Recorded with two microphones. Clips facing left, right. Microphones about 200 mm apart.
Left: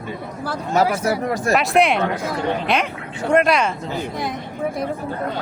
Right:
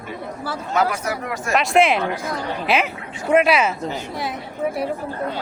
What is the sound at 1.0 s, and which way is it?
Speech, 35° left (ahead or behind).